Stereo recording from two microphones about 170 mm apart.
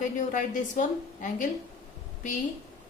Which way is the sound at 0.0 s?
50° left (ahead or behind).